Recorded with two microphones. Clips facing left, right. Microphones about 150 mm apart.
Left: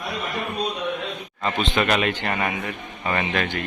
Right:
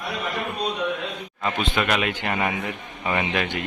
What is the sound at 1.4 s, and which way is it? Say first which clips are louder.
A man's voice: left 2 dB; 10° right (ahead or behind).